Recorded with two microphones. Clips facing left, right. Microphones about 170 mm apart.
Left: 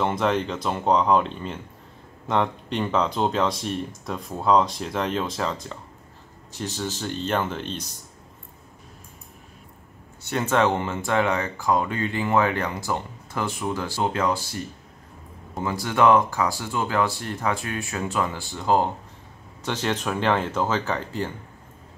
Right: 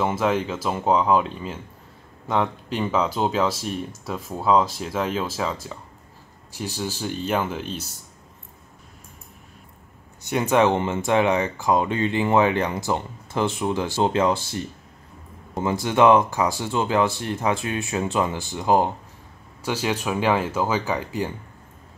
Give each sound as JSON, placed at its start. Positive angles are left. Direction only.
{"t": 0.0, "sound": "speech", "side_deg": -5}
{"t": 10.3, "sound": "speech", "side_deg": -15}